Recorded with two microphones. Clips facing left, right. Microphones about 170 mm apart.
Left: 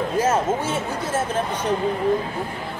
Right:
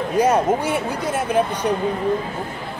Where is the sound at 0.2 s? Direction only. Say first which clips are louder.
Right 5 dB; 15° right (ahead or behind).